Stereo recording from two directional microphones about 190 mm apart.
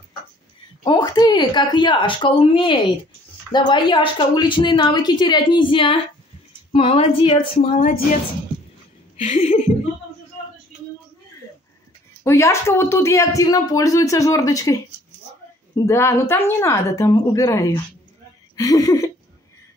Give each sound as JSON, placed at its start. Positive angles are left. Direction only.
{"t": 0.8, "sound": "a woman's voice", "side_deg": 20}
{"t": 9.2, "sound": "a woman's voice", "side_deg": 35}
{"t": 12.2, "sound": "speech", "side_deg": 15}